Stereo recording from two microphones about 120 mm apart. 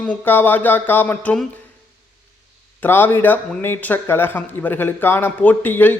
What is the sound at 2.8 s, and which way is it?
Speech, 15° left (ahead or behind).